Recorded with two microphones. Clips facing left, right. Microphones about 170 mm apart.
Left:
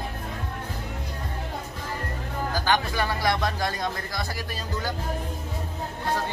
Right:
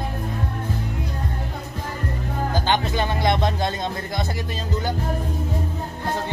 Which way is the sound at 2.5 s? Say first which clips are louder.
Right 2 dB; 20° right (ahead or behind).